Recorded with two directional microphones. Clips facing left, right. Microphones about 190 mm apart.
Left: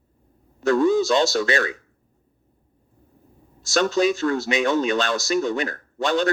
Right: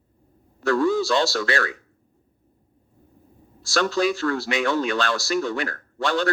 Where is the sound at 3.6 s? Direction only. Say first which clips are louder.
Left 2 dB; 20° left (ahead or behind).